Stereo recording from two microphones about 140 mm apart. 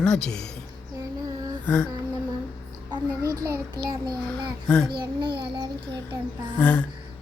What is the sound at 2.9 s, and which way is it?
A child's voice, 25° right (ahead or behind).